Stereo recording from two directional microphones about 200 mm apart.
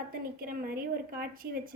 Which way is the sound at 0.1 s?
45° right (ahead or behind).